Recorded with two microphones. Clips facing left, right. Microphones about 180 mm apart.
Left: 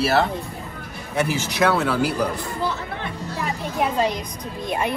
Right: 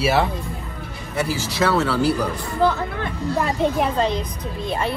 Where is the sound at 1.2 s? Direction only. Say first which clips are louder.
Even; 20° left (ahead or behind).